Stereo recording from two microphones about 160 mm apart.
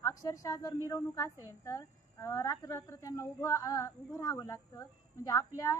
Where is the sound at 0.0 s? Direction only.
20° left (ahead or behind).